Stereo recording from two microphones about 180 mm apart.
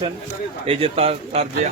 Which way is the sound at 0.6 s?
30° right (ahead or behind).